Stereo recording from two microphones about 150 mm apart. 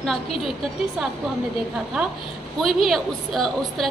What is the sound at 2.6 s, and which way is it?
A woman's voice, centre (ahead or behind).